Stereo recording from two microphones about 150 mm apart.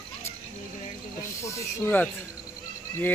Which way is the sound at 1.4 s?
15° left (ahead or behind).